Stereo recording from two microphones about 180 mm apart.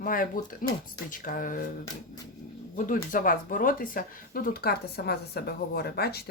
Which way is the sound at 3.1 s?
50° left (ahead or behind).